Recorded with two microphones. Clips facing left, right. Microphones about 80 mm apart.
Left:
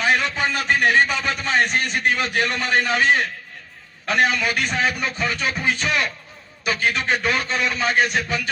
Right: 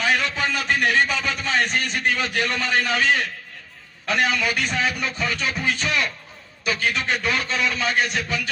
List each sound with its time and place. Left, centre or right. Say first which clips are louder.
0.0 s a sound: left 2 dB; centre
0.8 s a man's voice: left 3 dB; centre
3.0 s a man's voice: left 3 dB; left
4.0 s a man's voice: left 2 dB; centre